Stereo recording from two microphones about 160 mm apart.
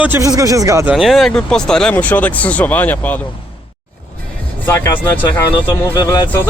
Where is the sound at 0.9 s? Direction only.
Centre (ahead or behind).